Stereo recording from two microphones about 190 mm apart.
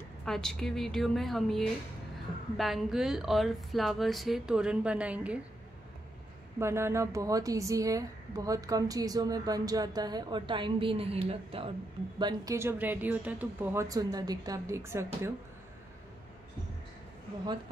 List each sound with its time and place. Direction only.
0.2 s speech: 5° left (ahead or behind)
6.6 s a woman's voice: 15° right (ahead or behind); by 11.7 s 30° right (ahead or behind)
12.2 s speech: 20° right (ahead or behind)